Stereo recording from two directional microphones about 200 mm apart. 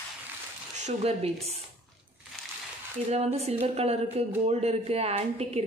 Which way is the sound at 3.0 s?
30° right (ahead or behind).